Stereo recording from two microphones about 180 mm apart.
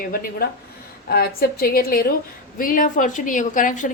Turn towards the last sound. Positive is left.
turn(degrees=45)  # may be behind; listen again after turning